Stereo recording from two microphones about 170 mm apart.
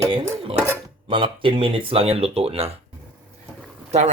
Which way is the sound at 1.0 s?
30° right (ahead or behind).